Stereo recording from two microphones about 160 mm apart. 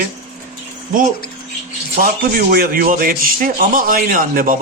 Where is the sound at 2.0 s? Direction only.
65° right (ahead or behind).